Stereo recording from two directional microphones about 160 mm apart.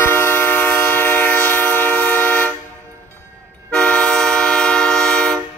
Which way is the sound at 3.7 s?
5° left (ahead or behind).